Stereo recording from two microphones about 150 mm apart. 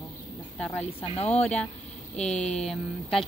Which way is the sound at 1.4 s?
5° left (ahead or behind).